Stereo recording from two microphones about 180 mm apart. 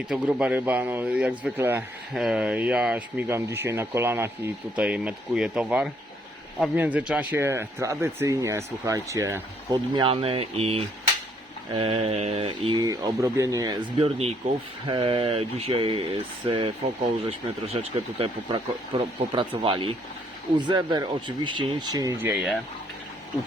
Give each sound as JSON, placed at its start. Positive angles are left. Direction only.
{"t": 0.1, "sound": "speech", "side_deg": -5}
{"t": 14.0, "sound": "speech", "side_deg": -35}
{"t": 22.3, "sound": "speech", "side_deg": 0}